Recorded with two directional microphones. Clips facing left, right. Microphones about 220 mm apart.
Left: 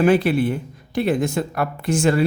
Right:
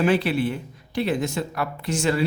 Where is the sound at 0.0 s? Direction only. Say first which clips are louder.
Left 4 dB; 50° left (ahead or behind).